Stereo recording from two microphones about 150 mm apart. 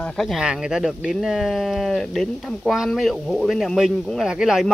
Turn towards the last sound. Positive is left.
turn(degrees=-5)  # may be behind; listen again after turning